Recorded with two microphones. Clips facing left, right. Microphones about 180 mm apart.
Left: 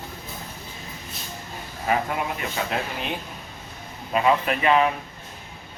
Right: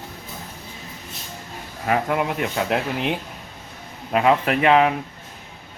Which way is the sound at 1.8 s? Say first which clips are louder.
Right 3 dB; 70° right (ahead or behind).